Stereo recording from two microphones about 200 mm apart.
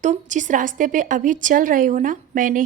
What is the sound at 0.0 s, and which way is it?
Speech, 40° right (ahead or behind).